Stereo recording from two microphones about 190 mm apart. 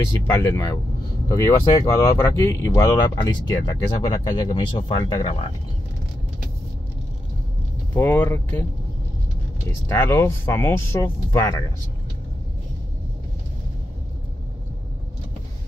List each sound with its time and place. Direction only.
0.3 s speech: 15° left (ahead or behind)
7.9 s speech: 10° left (ahead or behind)
9.7 s speech: 10° left (ahead or behind)